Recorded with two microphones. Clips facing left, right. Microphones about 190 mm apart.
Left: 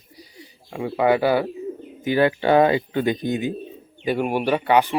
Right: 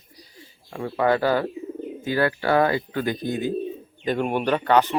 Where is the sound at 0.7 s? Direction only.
10° left (ahead or behind).